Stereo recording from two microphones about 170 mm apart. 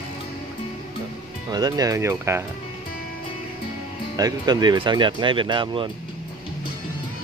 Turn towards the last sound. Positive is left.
turn(degrees=-30)  # may be behind; listen again after turning